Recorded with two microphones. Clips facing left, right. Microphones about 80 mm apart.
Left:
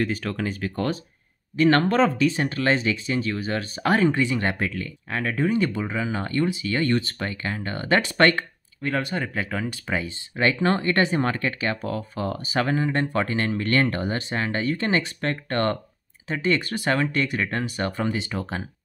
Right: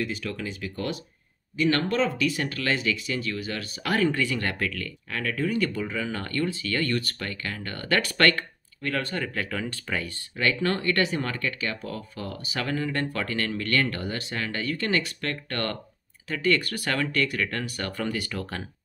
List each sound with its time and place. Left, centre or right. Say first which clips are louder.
0.0 s speech: left 5 dB; left; by 18.6 s centre